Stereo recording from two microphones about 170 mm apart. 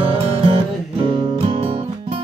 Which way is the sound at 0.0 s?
35° right (ahead or behind).